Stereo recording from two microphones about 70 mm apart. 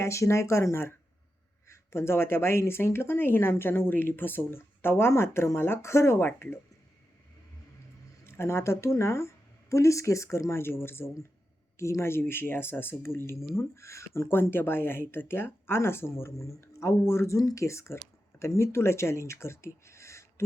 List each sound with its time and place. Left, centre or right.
0.0 s speech: left
8.2 s speech: left
10.4 s speech: left